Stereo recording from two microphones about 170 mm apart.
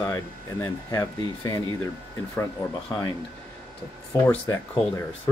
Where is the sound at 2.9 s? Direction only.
20° left (ahead or behind).